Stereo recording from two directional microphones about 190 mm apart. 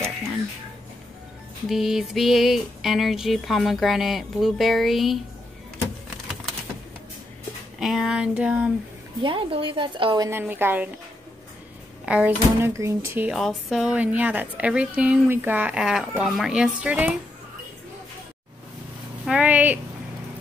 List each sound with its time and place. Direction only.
1.7 s speech: centre (ahead or behind)
7.8 s speech: centre (ahead or behind)
9.2 s a woman's voice: 30° right (ahead or behind); by 10.9 s 10° right (ahead or behind)
12.1 s a woman's voice: 10° right (ahead or behind)
13.3 s a woman's voice: centre (ahead or behind)
19.2 s a woman's voice: 5° right (ahead or behind)